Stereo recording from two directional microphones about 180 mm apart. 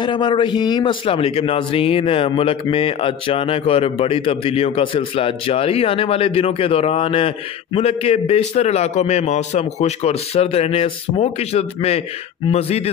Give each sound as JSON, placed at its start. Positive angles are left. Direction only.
{"t": 0.0, "sound": "speech", "side_deg": 25}